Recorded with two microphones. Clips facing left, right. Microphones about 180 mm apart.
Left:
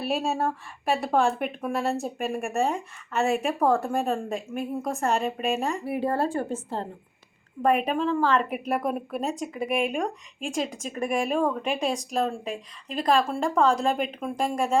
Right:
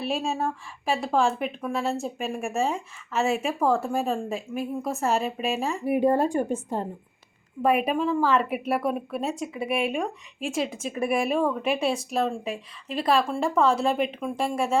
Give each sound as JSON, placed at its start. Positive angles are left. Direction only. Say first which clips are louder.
{"t": 0.0, "sound": "a woman's voice", "louder": "left 1 dB", "side_deg": 0}
{"t": 5.8, "sound": "a woman's voice", "louder": "right 4 dB", "side_deg": -15}